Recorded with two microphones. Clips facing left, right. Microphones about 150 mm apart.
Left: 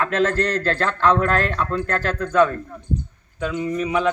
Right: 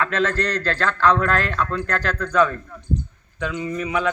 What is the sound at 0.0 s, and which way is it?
A man's voice, 40° left (ahead or behind).